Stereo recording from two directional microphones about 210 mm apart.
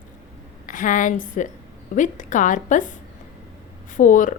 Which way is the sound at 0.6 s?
40° left (ahead or behind).